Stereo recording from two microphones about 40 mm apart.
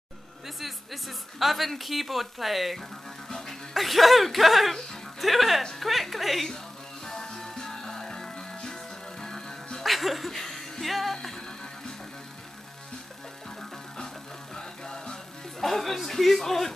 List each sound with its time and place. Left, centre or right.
0.6 s speech: centre
3.3 s music: centre
3.7 s speech: centre
7.1 s music: centre
9.8 s speech: centre
13.6 s music: centre
15.6 s speech: centre